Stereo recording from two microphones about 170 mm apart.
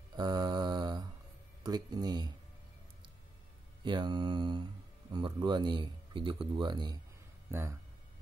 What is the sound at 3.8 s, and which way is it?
Speech, 25° right (ahead or behind).